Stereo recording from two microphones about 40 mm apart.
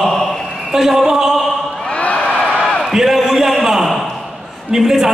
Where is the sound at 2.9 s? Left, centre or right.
Centre.